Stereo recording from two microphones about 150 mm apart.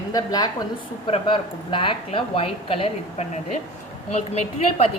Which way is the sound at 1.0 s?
35° left (ahead or behind).